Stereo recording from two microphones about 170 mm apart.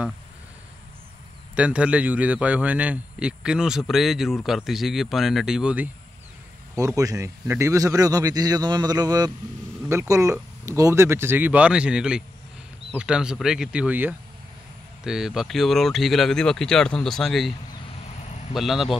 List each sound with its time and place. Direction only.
1.5 s a man's voice: 5° right (ahead or behind)
6.7 s a man's voice: 20° right (ahead or behind); by 18.9 s centre (ahead or behind)